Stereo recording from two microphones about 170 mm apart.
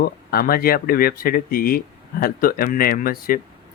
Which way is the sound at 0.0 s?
60° left (ahead or behind).